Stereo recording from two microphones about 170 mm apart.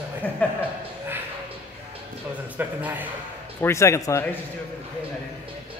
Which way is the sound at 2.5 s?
10° right (ahead or behind).